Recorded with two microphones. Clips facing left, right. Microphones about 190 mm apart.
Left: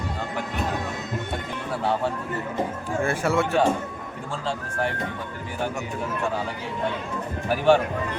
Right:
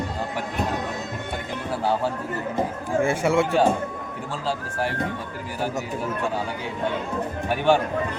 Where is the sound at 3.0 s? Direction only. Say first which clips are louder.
Right 2 dB; 20° right (ahead or behind).